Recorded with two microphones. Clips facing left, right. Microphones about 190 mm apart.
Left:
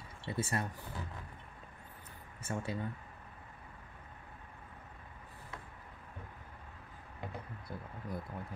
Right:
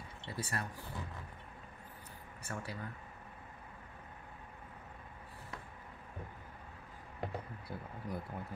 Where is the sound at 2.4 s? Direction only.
25° left (ahead or behind).